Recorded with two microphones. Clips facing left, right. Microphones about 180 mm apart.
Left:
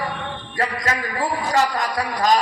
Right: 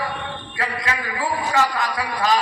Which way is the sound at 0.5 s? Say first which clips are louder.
Left 3 dB; 40° left (ahead or behind).